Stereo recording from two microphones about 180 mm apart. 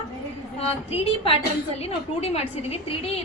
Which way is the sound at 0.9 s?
30° left (ahead or behind).